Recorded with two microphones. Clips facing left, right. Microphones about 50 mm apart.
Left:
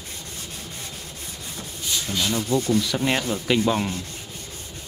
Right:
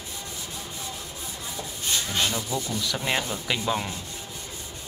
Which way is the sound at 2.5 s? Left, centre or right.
Left.